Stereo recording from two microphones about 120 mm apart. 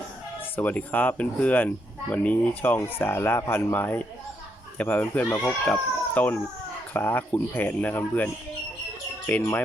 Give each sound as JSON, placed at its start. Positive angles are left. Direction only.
{"t": 0.5, "sound": "speech", "side_deg": 15}